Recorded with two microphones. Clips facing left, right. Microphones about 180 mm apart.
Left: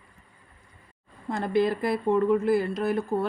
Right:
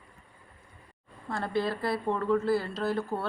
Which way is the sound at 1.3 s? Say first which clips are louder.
Left 6 dB; 15° left (ahead or behind).